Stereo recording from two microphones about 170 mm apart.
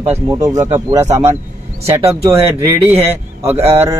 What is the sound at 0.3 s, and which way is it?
Speech, 20° right (ahead or behind).